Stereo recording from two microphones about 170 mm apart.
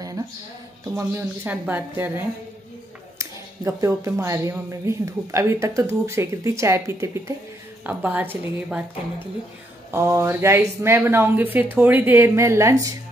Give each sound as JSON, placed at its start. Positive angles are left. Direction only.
{"t": 0.9, "sound": "speech", "side_deg": -15}